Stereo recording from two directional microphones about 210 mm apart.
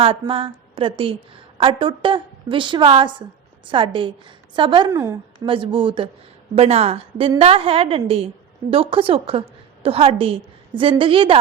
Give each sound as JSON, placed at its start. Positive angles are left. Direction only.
{"t": 0.0, "sound": "a woman's voice", "side_deg": -25}
{"t": 5.5, "sound": "a woman's voice", "side_deg": -25}